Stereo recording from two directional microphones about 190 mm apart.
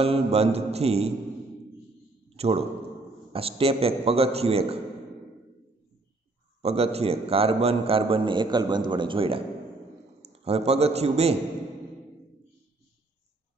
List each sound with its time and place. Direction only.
0.0 s a man's voice: 30° right (ahead or behind)
2.2 s a sound: 30° right (ahead or behind)
3.3 s a man's voice: 30° right (ahead or behind)
6.6 s a man's voice: 30° right (ahead or behind)